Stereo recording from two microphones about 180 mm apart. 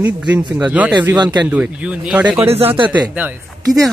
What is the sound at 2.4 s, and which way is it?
Speech, 35° right (ahead or behind).